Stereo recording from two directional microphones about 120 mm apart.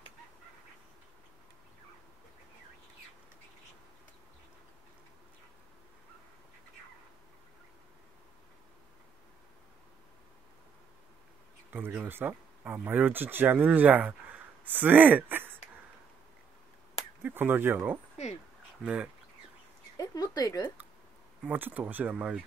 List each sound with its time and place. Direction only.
11.7 s speech: 15° right (ahead or behind)
17.2 s speech: 15° right (ahead or behind)
20.0 s a sound: 35° left (ahead or behind)
21.5 s speech: 15° right (ahead or behind)